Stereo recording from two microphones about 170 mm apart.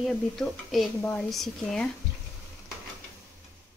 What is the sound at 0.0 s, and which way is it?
A woman's voice, centre (ahead or behind).